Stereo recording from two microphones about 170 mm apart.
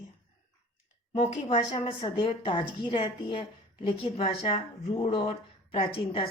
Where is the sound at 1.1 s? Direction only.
40° left (ahead or behind).